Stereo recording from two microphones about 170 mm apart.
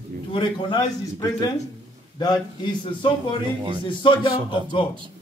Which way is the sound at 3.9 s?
30° left (ahead or behind).